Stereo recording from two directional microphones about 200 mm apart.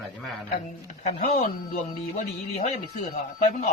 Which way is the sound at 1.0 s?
30° left (ahead or behind).